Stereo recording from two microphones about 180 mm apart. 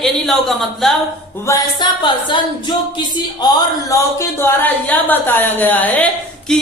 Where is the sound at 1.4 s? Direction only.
20° left (ahead or behind).